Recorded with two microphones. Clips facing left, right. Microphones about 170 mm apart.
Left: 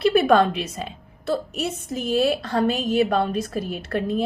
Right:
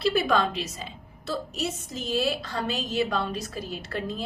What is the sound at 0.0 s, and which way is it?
A woman's voice, 55° left (ahead or behind).